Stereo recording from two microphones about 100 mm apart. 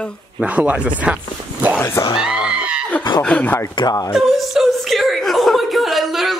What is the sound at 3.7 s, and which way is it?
Speech, 45° left (ahead or behind).